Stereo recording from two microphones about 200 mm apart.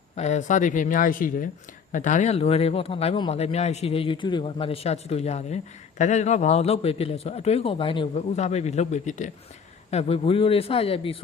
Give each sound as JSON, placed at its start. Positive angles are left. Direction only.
{"t": 0.2, "sound": "speech", "side_deg": 35}